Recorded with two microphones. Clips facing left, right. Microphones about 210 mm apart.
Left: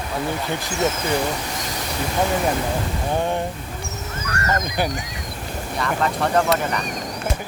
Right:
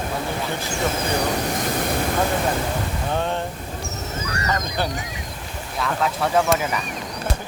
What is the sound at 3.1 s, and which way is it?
Speech, 15° left (ahead or behind).